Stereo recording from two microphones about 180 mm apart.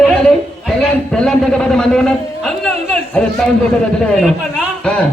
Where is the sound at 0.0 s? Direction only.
Centre (ahead or behind).